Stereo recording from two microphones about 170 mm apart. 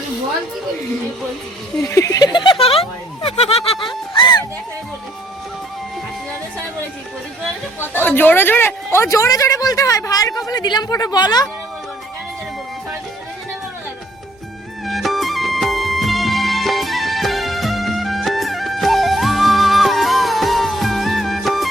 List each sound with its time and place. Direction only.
1.8 s snicker: 20° left (ahead or behind)
8.0 s speech: 10° left (ahead or behind)
14.8 s music: centre (ahead or behind)